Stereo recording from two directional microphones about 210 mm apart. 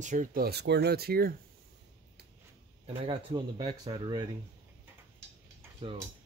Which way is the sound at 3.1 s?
20° right (ahead or behind).